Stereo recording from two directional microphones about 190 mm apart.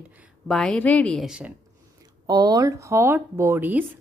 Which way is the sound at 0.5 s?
5° left (ahead or behind).